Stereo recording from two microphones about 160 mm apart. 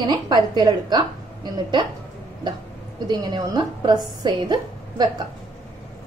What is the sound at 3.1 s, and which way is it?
A woman's voice, 25° right (ahead or behind).